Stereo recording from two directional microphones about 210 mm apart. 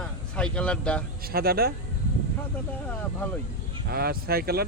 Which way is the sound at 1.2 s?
45° right (ahead or behind).